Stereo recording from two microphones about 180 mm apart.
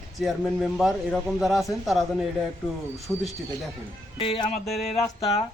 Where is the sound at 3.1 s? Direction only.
10° left (ahead or behind).